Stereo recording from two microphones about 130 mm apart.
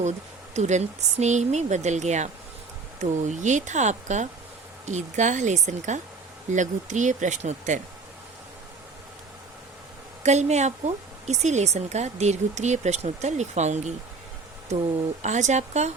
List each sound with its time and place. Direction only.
0.5 s speech: 60° right (ahead or behind)
10.2 s speech: 60° right (ahead or behind)